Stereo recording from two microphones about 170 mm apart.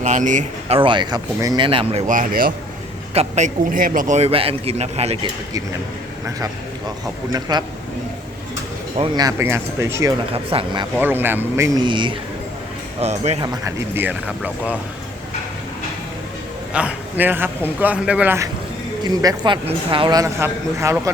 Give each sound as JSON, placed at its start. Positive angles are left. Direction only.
{"t": 0.0, "sound": "speech", "side_deg": -45}
{"t": 0.8, "sound": "a man's voice", "side_deg": -30}
{"t": 2.0, "sound": "speech", "side_deg": -50}
{"t": 3.2, "sound": "a man's voice", "side_deg": -45}
{"t": 7.3, "sound": "a man's voice", "side_deg": -25}
{"t": 9.0, "sound": "a man's voice", "side_deg": -20}
{"t": 10.3, "sound": "a man's voice", "side_deg": -35}
{"t": 10.9, "sound": "speech", "side_deg": -10}
{"t": 13.0, "sound": "a man's voice", "side_deg": -40}
{"t": 13.4, "sound": "speech", "side_deg": -20}
{"t": 16.7, "sound": "a man's voice", "side_deg": -10}
{"t": 19.0, "sound": "a man's voice", "side_deg": -25}